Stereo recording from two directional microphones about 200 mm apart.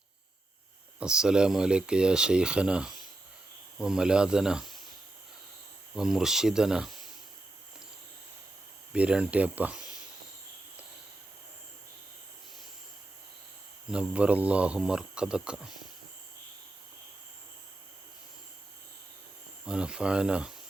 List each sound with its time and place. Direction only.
0.9 s speech: 5° right (ahead or behind)
6.0 s speech: centre (ahead or behind)
8.9 s speech: 5° right (ahead or behind)
13.9 s speech: 5° right (ahead or behind)
19.6 s speech: 5° right (ahead or behind)